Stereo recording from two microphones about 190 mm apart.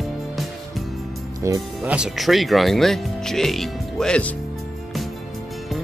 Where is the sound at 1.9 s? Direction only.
Centre (ahead or behind).